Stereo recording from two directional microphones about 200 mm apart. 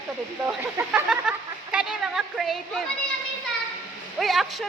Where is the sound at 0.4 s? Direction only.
10° right (ahead or behind).